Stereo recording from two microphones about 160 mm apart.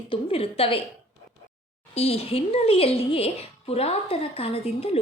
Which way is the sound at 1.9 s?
40° left (ahead or behind).